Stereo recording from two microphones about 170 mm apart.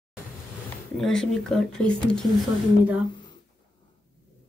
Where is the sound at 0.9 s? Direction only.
Centre (ahead or behind).